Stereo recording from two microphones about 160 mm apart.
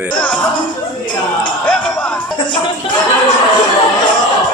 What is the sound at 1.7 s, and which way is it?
Music, 10° left (ahead or behind).